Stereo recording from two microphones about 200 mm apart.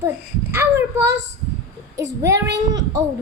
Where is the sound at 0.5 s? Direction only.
10° right (ahead or behind).